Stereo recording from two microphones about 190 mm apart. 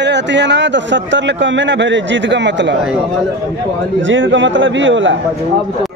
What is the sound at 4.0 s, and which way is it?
Speech, 80° right.